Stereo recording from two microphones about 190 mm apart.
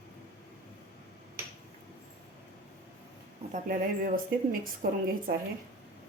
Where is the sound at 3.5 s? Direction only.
45° right (ahead or behind).